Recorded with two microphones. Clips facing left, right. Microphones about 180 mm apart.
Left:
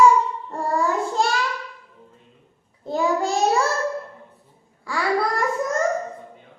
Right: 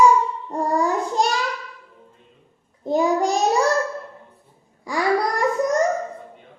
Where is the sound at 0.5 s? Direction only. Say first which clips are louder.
Right 2 dB; 15° right (ahead or behind).